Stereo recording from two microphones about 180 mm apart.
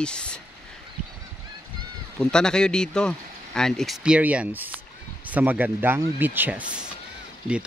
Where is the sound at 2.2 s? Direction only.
5° left (ahead or behind).